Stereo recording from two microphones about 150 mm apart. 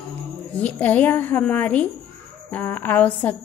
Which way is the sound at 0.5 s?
10° left (ahead or behind).